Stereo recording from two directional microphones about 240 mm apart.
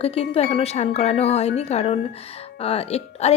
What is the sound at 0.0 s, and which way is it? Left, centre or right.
Speech, left.